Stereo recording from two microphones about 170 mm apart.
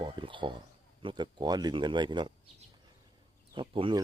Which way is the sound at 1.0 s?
25° right (ahead or behind).